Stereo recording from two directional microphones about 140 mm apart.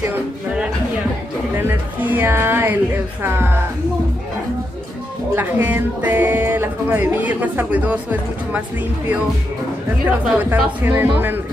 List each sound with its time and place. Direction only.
0.0 s a sound: 10° right (ahead or behind)
1.6 s music: 15° right (ahead or behind)
5.3 s speech: 15° right (ahead or behind)
10.0 s speech: 10° right (ahead or behind)